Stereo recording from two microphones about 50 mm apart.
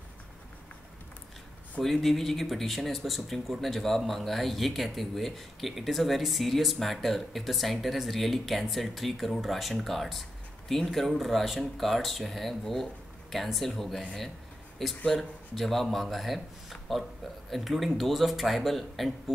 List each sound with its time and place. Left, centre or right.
1.8 s speech: centre
15.0 s speech: centre